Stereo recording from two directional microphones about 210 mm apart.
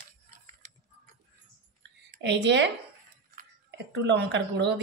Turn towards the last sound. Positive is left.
turn(degrees=-55)  # may be behind; listen again after turning